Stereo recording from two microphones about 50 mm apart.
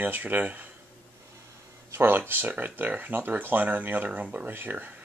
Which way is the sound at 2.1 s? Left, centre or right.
Right.